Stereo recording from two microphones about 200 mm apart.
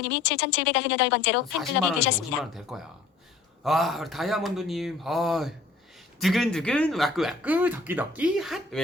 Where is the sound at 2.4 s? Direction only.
Centre (ahead or behind).